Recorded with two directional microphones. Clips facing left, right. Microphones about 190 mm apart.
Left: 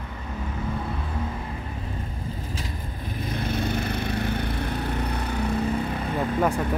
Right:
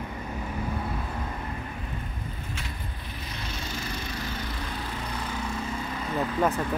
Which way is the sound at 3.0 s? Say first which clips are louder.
Left 12 dB; 50° left (ahead or behind).